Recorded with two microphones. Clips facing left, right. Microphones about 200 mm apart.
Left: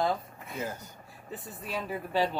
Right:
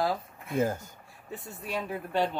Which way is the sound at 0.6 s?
50° right (ahead or behind).